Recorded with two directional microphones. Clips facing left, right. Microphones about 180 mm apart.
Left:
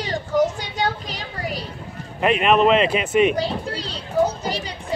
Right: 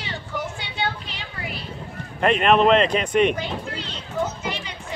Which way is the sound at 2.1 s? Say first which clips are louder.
Even; 5° left (ahead or behind).